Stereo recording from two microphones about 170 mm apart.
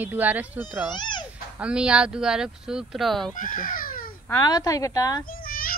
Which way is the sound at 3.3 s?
50° left (ahead or behind).